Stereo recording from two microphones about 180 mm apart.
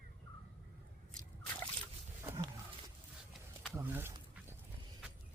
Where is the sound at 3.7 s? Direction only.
10° right (ahead or behind).